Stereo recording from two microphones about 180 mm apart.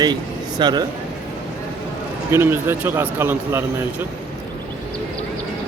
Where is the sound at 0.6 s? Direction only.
25° right (ahead or behind).